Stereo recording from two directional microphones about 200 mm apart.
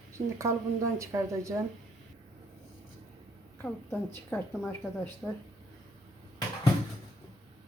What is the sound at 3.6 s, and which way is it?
A woman's voice, 10° left (ahead or behind).